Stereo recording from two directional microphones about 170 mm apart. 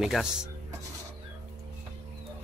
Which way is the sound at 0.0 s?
5° right (ahead or behind).